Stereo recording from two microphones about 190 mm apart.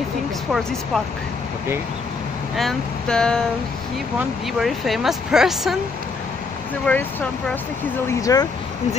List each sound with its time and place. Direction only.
2.5 s speech: centre (ahead or behind)
4.6 s speech: centre (ahead or behind)
6.9 s speech: 10° left (ahead or behind)